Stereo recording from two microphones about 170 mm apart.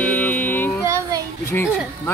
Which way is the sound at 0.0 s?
10° left (ahead or behind).